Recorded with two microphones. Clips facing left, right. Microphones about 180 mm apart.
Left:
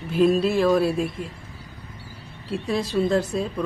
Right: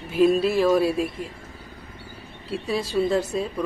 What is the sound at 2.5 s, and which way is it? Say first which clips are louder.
Speech: left 1 dB; 5° right (ahead or behind).